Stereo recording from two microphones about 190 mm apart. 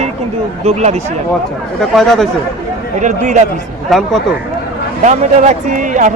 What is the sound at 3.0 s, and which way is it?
Speech, 40° right (ahead or behind).